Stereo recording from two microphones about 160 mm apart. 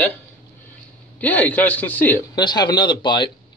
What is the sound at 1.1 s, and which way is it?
A man's voice, 10° left (ahead or behind).